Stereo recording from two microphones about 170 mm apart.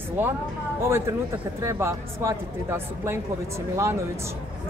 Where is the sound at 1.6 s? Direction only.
15° right (ahead or behind).